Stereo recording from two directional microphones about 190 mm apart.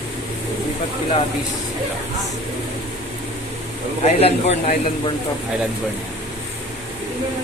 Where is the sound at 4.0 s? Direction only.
35° left (ahead or behind).